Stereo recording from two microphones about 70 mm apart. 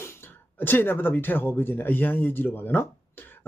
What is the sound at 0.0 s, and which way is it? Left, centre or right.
Speech, left.